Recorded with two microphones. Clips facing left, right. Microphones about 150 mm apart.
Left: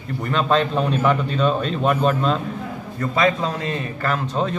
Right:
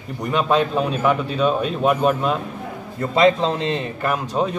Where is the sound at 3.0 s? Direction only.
25° right (ahead or behind).